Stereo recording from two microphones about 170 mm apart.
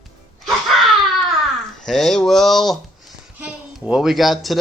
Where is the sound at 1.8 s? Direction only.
Centre (ahead or behind).